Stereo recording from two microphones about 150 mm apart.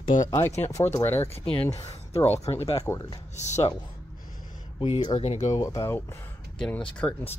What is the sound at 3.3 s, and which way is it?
Speech, 50° left (ahead or behind).